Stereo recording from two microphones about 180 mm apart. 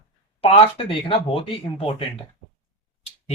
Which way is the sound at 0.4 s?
30° left (ahead or behind).